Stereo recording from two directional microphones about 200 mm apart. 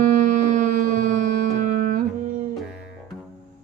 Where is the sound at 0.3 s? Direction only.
40° right (ahead or behind).